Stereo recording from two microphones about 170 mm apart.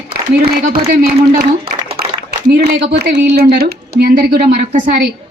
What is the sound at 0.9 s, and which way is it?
Speech, 65° right (ahead or behind).